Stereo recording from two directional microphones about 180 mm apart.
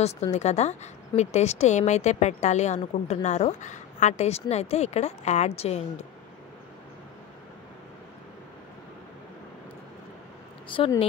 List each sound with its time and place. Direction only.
0.0 s a woman's voice: 35° left (ahead or behind)
10.7 s speech: 30° left (ahead or behind)